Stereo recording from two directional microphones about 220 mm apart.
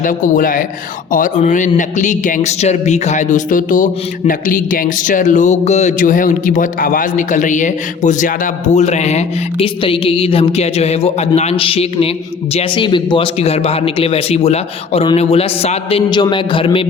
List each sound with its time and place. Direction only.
0.0 s speech: 35° left (ahead or behind)